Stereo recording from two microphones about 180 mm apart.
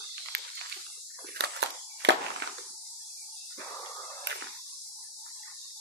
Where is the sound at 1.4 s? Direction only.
75° right (ahead or behind).